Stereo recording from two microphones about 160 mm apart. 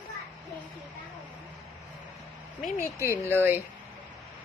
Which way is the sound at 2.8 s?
15° left (ahead or behind).